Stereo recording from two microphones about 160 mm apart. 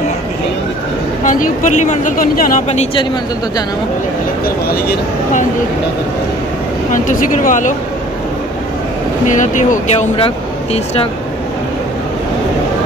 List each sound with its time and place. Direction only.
1.2 s speech: 55° left (ahead or behind)
4.6 s speech: 70° left (ahead or behind)
6.9 s speech: 55° left (ahead or behind)
9.3 s speech: 50° left (ahead or behind); by 11.1 s 35° left (ahead or behind)